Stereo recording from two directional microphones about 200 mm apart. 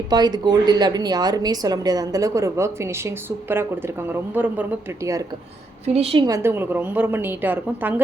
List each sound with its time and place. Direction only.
0.1 s a woman's voice: 20° right (ahead or behind)
5.8 s a woman's voice: 30° right (ahead or behind)
6.2 s a woman's voice: 15° right (ahead or behind)